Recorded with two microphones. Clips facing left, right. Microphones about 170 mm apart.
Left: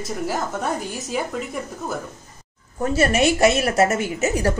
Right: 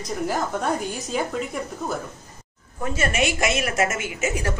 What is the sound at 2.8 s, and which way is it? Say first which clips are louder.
A woman's voice: left 5 dB; 40° left (ahead or behind).